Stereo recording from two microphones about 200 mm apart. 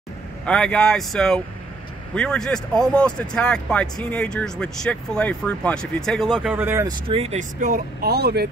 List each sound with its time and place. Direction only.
0.5 s speech: 5° left (ahead or behind); by 7.0 s 15° right (ahead or behind)
7.1 s speech: 30° right (ahead or behind); by 8.5 s 55° right (ahead or behind)